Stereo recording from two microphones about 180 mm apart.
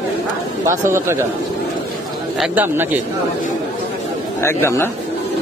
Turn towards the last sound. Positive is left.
turn(degrees=15)  # may be behind; listen again after turning